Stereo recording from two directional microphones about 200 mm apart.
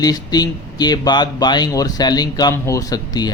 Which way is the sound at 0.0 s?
20° left (ahead or behind).